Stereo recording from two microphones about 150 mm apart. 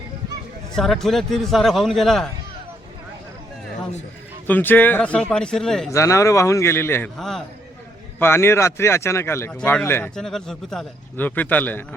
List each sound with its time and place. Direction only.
0.8 s a man's voice: centre (ahead or behind)
4.4 s speech: 10° left (ahead or behind)
5.9 s a man's voice: 20° left (ahead or behind)
7.2 s a man's voice: centre (ahead or behind)
8.2 s speech: 15° left (ahead or behind)
9.6 s a man's voice: 5° left (ahead or behind)
10.2 s speech: 5° left (ahead or behind)